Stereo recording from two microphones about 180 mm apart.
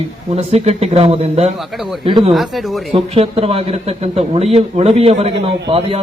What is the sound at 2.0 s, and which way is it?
Speech, 30° right (ahead or behind).